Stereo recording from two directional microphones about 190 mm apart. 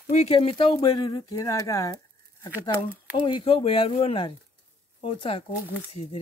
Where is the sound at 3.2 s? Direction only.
30° left (ahead or behind).